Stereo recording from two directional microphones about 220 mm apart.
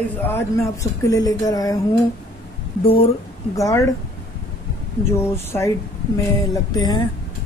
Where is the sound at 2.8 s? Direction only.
25° left (ahead or behind).